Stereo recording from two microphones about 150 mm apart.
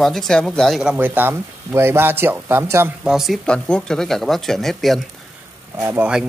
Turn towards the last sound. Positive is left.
turn(degrees=-15)  # may be behind; listen again after turning